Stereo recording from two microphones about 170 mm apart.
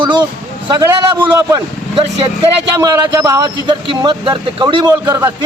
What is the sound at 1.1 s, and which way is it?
Speech, 10° right (ahead or behind).